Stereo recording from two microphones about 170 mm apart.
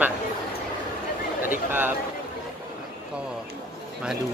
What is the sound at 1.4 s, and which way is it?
Speech, 10° right (ahead or behind).